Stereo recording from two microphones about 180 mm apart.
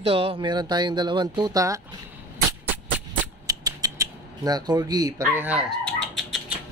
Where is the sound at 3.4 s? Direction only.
20° right (ahead or behind).